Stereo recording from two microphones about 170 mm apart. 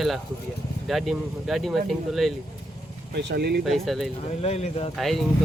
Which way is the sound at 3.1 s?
70° right (ahead or behind).